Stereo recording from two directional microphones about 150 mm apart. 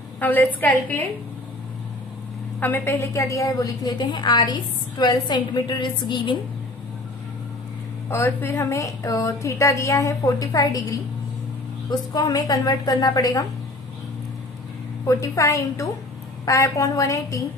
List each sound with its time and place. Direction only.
0.2 s a woman's voice: 10° left (ahead or behind)
2.6 s a woman's voice: 15° left (ahead or behind); by 6.4 s 30° left (ahead or behind)
8.1 s a woman's voice: 15° left (ahead or behind)
15.0 s a woman's voice: 20° left (ahead or behind)